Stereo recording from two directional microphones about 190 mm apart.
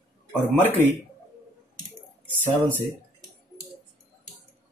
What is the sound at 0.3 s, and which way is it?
Speech, 5° left (ahead or behind).